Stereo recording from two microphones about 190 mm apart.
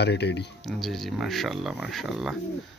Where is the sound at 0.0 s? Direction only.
65° left (ahead or behind).